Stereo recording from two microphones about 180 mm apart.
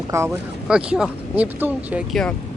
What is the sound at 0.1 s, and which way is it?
Speech, 15° right (ahead or behind).